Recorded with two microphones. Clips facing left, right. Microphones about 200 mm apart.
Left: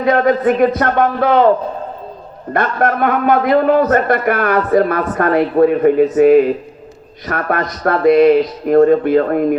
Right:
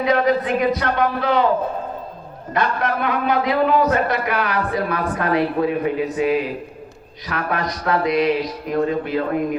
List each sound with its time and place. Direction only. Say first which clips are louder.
0.0 s a man's voice: left 5 dB; 50° left (ahead or behind)
2.5 s a man's voice: left 5 dB; 50° left (ahead or behind)